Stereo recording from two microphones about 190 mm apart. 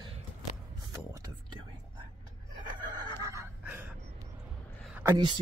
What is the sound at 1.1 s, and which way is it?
Whispering, 20° right (ahead or behind).